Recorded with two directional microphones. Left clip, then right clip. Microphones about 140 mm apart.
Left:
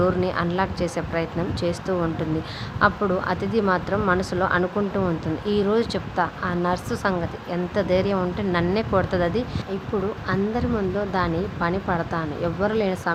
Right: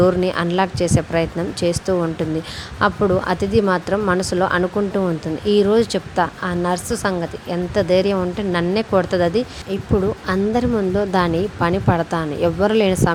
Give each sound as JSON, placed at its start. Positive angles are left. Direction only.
{"t": 0.0, "sound": "speech", "side_deg": -55}
{"t": 10.2, "sound": "speech", "side_deg": -60}